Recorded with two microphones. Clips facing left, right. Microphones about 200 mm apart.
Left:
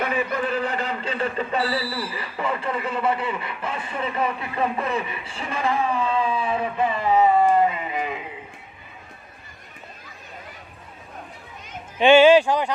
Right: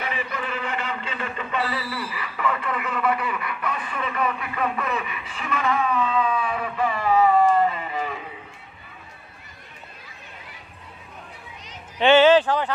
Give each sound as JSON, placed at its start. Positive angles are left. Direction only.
{"t": 0.0, "sound": "speech", "side_deg": 45}
{"t": 11.9, "sound": "speech", "side_deg": 10}